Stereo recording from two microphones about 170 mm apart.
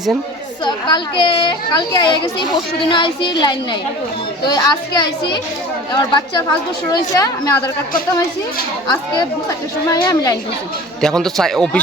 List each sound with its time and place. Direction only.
0.6 s a child's voice: 25° left (ahead or behind)
9.8 s a child's voice: 20° left (ahead or behind)
11.0 s a man's voice: 5° left (ahead or behind)